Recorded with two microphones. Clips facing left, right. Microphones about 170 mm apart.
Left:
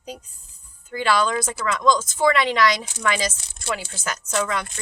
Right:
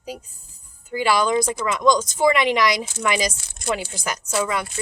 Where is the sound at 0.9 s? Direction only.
10° right (ahead or behind).